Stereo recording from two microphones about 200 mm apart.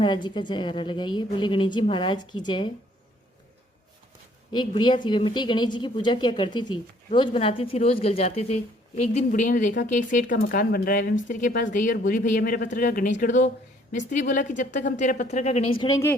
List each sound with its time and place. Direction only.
0.0 s a woman's voice: 20° left (ahead or behind)
4.5 s a woman's voice: 25° left (ahead or behind)
15.9 s speech: 15° left (ahead or behind)